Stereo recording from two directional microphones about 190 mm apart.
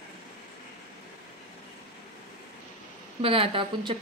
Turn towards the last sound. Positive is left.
turn(degrees=-30)  # may be behind; listen again after turning